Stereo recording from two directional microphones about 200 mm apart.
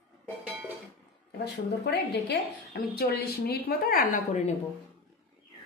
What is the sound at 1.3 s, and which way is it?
A woman's voice, 55° left (ahead or behind).